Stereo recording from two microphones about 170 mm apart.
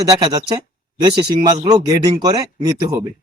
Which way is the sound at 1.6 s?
20° right (ahead or behind).